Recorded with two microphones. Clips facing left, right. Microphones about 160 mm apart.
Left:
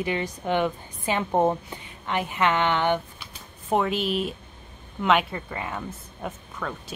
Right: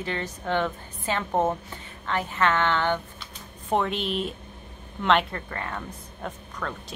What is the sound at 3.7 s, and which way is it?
A woman's voice, 5° left (ahead or behind).